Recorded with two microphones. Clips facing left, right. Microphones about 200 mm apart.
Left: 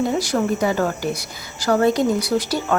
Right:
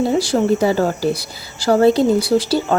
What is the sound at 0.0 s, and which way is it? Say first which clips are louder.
A woman's voice: right 4 dB; 30° right (ahead or behind).